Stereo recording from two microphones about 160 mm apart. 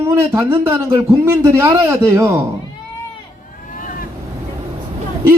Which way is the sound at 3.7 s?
60° left (ahead or behind).